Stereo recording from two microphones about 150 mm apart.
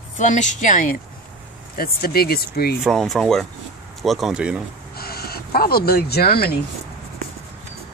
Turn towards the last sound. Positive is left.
turn(degrees=90)